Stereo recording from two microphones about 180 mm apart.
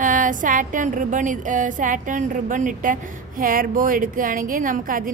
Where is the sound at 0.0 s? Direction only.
45° right (ahead or behind).